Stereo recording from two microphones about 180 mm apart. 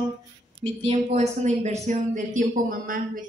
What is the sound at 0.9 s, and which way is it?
Speech, 35° right (ahead or behind).